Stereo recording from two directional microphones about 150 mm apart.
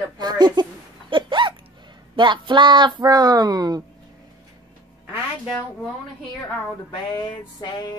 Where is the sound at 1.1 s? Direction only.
35° right (ahead or behind).